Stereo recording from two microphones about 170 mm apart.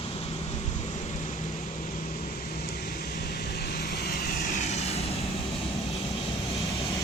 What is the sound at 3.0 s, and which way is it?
Vehicle, 70° left (ahead or behind).